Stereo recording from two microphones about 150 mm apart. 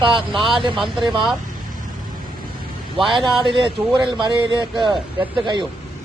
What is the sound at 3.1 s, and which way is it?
Speech, 30° right (ahead or behind).